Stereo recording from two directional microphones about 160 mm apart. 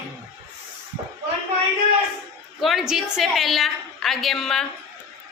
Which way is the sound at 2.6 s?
Centre (ahead or behind).